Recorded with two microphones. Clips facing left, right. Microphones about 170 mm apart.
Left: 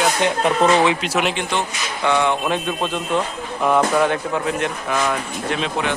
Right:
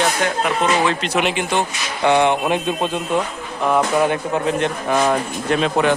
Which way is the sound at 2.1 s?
20° right (ahead or behind).